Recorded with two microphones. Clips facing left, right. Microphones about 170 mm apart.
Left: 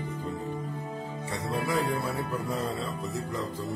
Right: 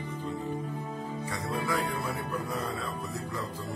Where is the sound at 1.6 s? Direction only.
25° left (ahead or behind).